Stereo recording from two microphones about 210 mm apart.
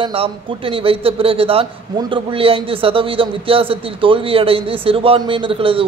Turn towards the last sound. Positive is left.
turn(degrees=-25)  # may be behind; listen again after turning